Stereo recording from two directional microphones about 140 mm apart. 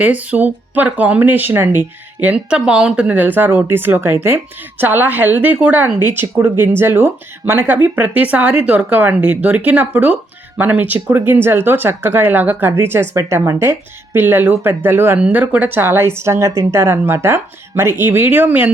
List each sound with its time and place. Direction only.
0.0 s speech: 10° right (ahead or behind)